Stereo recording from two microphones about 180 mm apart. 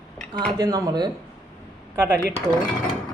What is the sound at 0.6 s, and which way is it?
Speech, 20° right (ahead or behind).